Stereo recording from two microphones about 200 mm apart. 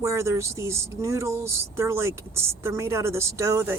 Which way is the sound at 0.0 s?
15° right (ahead or behind).